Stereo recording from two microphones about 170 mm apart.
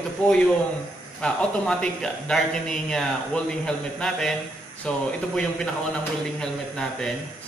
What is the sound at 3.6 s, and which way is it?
Speech, 5° left (ahead or behind).